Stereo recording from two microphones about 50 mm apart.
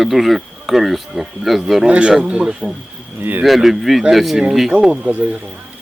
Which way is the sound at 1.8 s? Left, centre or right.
Right.